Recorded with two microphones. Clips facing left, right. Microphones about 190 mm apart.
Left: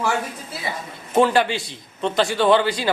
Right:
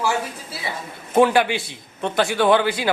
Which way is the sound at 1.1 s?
10° right (ahead or behind).